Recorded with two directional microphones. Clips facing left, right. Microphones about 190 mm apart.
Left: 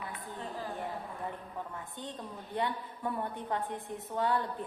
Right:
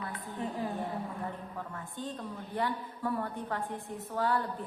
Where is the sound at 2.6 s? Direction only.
20° left (ahead or behind).